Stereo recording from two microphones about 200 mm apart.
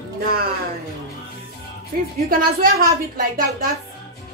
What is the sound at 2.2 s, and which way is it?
Speech, 45° right (ahead or behind).